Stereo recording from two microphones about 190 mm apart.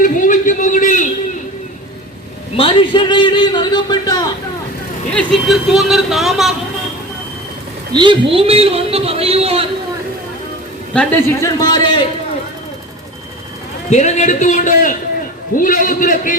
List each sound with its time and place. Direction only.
0.0 s a sound: 45° left (ahead or behind)
2.6 s a man's voice: 30° left (ahead or behind)
5.1 s speech: centre (ahead or behind)
7.9 s a woman's voice: 25° right (ahead or behind)
10.9 s a man's voice: 10° left (ahead or behind)
13.9 s a man's voice: 40° left (ahead or behind)